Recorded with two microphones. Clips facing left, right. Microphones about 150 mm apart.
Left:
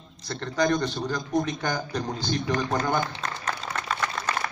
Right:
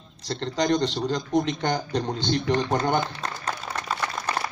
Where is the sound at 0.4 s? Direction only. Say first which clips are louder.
Right 1 dB; 20° right (ahead or behind).